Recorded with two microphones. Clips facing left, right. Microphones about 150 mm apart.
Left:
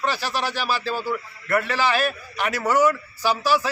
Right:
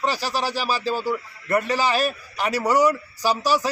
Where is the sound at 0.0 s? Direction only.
35° right (ahead or behind).